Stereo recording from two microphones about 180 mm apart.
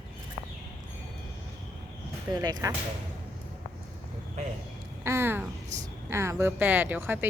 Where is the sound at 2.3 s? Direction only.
20° right (ahead or behind).